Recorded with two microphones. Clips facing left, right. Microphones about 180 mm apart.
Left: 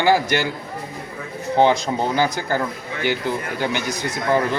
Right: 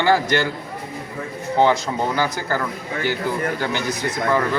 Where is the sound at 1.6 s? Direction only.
20° left (ahead or behind).